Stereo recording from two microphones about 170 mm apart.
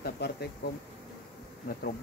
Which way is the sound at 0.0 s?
70° left (ahead or behind).